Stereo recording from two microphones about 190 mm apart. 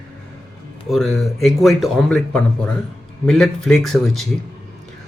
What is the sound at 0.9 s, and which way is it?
Speech, centre (ahead or behind).